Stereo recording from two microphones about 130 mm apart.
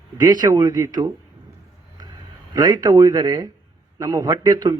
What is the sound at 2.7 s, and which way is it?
A man's voice, 30° right (ahead or behind).